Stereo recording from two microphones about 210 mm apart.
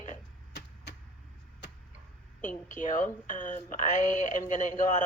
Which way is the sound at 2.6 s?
35° left (ahead or behind).